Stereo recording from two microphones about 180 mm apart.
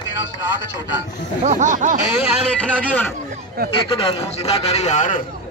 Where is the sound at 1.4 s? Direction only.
45° right (ahead or behind).